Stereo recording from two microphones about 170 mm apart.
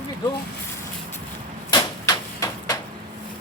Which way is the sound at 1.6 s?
20° left (ahead or behind).